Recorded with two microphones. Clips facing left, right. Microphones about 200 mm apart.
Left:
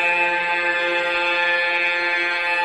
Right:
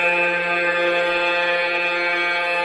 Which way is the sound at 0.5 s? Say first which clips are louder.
Right 5 dB; 60° right (ahead or behind).